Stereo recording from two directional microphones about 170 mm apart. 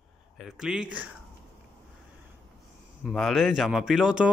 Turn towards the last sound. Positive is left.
turn(degrees=-5)  # may be behind; listen again after turning